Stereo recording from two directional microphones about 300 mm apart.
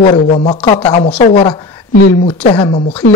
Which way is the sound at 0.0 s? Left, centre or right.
Left.